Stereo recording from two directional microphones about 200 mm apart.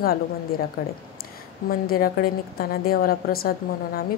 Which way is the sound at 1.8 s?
50° left (ahead or behind).